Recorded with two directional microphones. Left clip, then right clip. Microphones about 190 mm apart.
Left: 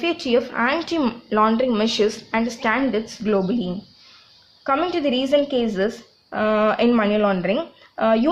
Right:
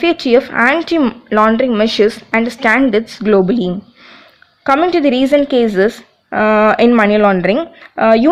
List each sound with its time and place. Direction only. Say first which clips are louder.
0.0 s speech: right 9 dB; 35° right (ahead or behind)